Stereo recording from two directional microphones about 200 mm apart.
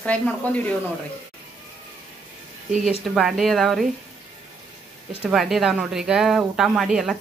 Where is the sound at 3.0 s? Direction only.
Centre (ahead or behind).